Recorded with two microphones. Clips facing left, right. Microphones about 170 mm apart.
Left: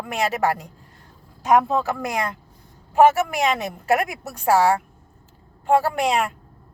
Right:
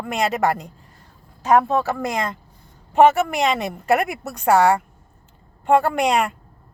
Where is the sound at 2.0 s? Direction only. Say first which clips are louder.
Right 1 dB; 10° left (ahead or behind).